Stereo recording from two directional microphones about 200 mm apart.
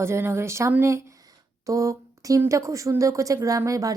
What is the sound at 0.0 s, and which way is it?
A woman's voice, 10° right (ahead or behind).